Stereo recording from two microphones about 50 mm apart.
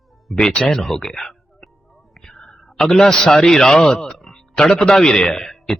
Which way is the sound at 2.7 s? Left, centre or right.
Centre.